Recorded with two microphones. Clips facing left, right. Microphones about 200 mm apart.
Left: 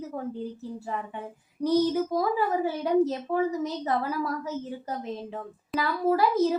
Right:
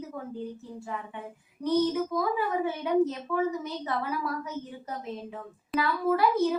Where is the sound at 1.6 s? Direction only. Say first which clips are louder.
Left 2 dB; 35° left (ahead or behind).